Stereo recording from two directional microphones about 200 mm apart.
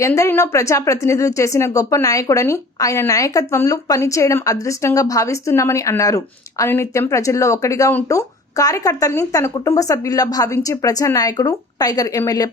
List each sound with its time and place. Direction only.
0.2 s a woman's voice: 15° left (ahead or behind)